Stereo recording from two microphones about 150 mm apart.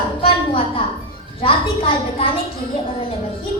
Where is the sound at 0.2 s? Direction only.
35° left (ahead or behind).